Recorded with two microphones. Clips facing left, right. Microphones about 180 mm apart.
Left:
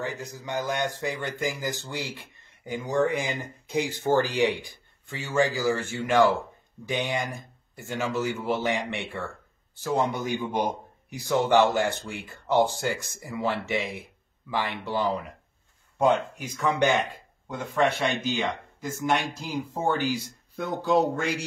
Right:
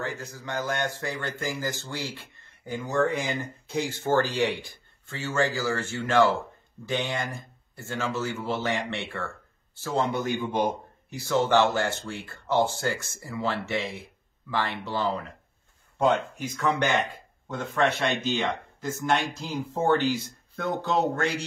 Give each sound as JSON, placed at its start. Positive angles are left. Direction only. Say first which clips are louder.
{"t": 0.0, "sound": "speech", "louder": "left 1 dB", "side_deg": 15}